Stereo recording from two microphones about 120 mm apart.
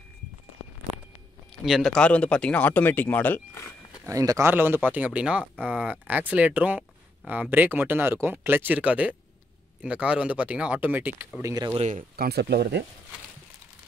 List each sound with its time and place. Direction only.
1.5 s speech: centre (ahead or behind); by 4.0 s 25° left (ahead or behind)
4.0 s speech: 30° right (ahead or behind)
11.4 s speech: 35° right (ahead or behind)
11.7 s speech: 65° right (ahead or behind)